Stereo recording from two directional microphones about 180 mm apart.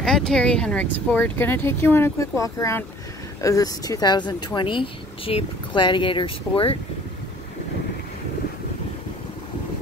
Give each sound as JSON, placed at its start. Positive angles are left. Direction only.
{"t": 0.0, "sound": "speech", "side_deg": 5}